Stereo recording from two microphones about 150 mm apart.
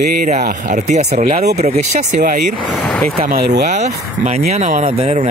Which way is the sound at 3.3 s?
90° right.